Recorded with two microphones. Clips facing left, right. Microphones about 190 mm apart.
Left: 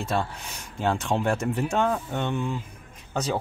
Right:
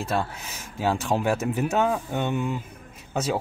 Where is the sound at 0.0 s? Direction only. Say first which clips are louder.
Right 1 dB; centre (ahead or behind).